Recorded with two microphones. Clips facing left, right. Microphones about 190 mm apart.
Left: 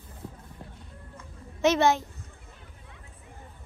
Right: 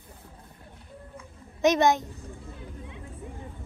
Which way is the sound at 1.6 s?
15° right (ahead or behind).